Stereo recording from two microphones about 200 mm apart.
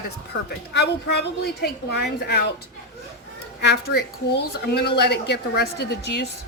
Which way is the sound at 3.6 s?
55° left (ahead or behind).